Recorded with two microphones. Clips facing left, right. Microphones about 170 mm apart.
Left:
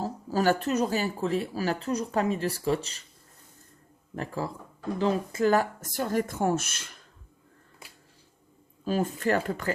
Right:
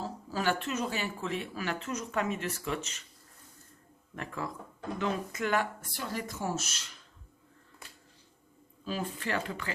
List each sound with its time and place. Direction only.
0.0 s speech: 40° left (ahead or behind)
4.1 s speech: 35° left (ahead or behind); by 6.9 s 55° left (ahead or behind)
8.8 s speech: 45° left (ahead or behind)